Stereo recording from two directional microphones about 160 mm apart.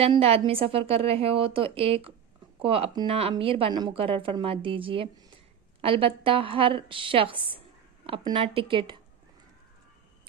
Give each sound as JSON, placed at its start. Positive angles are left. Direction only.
{"t": 0.0, "sound": "a woman's voice", "side_deg": -40}